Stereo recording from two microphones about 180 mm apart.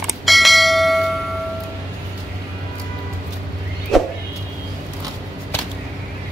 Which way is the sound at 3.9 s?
Centre (ahead or behind).